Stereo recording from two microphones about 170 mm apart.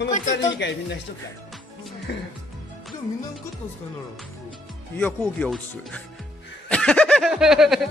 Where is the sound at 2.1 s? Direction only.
90° left.